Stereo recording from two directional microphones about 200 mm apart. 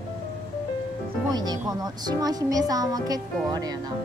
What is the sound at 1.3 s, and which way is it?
Speech, 20° right (ahead or behind).